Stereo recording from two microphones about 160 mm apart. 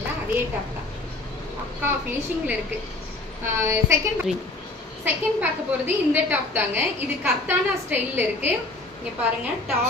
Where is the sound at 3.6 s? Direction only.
15° right (ahead or behind).